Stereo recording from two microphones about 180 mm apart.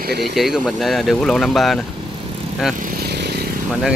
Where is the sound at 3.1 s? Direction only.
65° right (ahead or behind).